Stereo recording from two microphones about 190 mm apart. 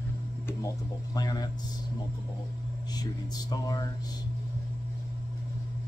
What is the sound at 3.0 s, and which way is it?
Speech, 20° left (ahead or behind).